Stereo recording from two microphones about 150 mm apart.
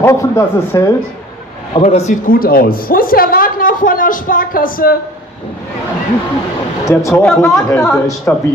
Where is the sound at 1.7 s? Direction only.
45° left (ahead or behind).